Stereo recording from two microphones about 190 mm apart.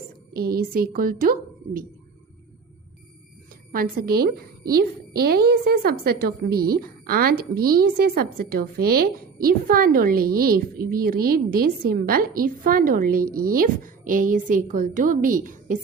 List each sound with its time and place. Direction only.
0.3 s speech: 50° right (ahead or behind)
3.7 s speech: 50° right (ahead or behind)